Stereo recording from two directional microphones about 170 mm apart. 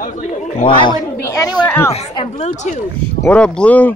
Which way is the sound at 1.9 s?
40° left (ahead or behind).